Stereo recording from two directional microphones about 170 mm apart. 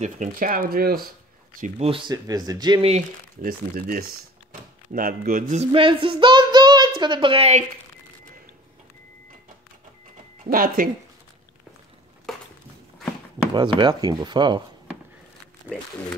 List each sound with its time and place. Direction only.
0.0 s speech: 50° right (ahead or behind)
1.6 s speech: 35° right (ahead or behind)
3.3 s speech: 55° right (ahead or behind)
5.7 s speech: 30° right (ahead or behind)
10.4 s speech: 55° right (ahead or behind)
12.3 s a sound: centre (ahead or behind)
13.5 s speech: 25° right (ahead or behind)